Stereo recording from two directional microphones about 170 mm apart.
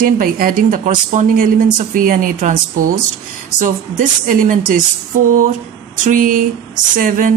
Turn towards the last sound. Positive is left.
turn(degrees=-50)  # may be behind; listen again after turning